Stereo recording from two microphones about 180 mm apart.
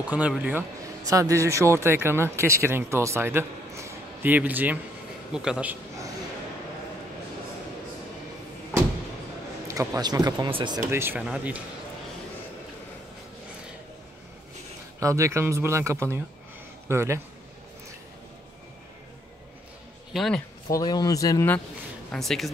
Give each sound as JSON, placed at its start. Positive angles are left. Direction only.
{"t": 0.1, "sound": "a man's voice", "side_deg": -5}
{"t": 9.7, "sound": "speech", "side_deg": -20}
{"t": 10.9, "sound": "a man's voice", "side_deg": -15}
{"t": 15.0, "sound": "a man's voice", "side_deg": -15}
{"t": 20.1, "sound": "speech", "side_deg": 0}
{"t": 20.6, "sound": "speech", "side_deg": 20}
{"t": 22.1, "sound": "a man's voice", "side_deg": 0}